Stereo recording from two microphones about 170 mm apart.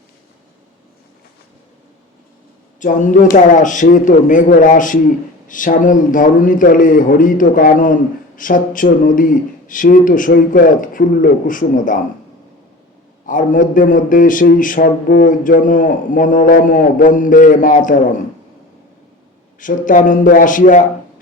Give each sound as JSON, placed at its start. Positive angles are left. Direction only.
{"t": 2.8, "sound": "a man's voice", "side_deg": 50}
{"t": 13.2, "sound": "a man's voice", "side_deg": 50}
{"t": 19.5, "sound": "a man's voice", "side_deg": 50}